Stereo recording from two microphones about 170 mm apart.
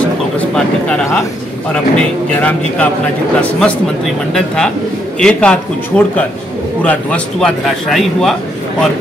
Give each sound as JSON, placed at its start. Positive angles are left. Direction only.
{"t": 1.7, "sound": "a man's voice", "side_deg": 5}
{"t": 5.2, "sound": "a man's voice", "side_deg": 5}